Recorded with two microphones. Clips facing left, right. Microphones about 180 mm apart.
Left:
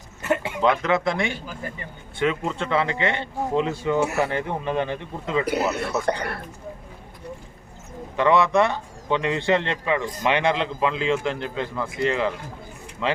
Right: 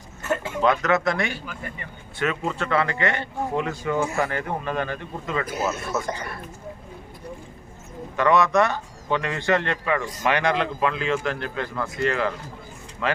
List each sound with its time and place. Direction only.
0.2 s speech: 15° left (ahead or behind); by 2.2 s 30° left (ahead or behind)
2.2 s a man's voice: 15° left (ahead or behind)
5.5 s speech: 70° left (ahead or behind)
8.1 s a man's voice: 20° left (ahead or behind)